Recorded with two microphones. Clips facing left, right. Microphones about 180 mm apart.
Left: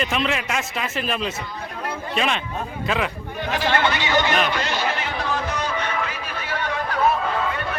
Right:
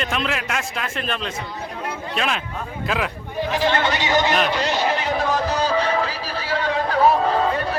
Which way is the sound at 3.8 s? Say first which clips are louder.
Right 1 dB; 40° right (ahead or behind).